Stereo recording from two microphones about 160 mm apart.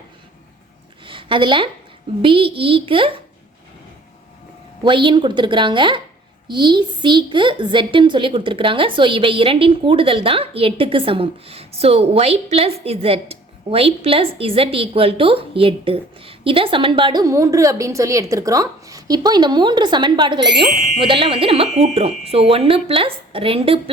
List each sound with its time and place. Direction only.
1.0 s a woman's voice: 30° right (ahead or behind)
4.8 s a woman's voice: 30° right (ahead or behind)